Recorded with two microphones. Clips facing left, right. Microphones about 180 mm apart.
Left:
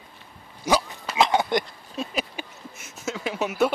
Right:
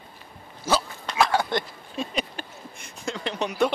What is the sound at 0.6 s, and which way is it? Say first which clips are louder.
Dog: left 2 dB; 15° left (ahead or behind).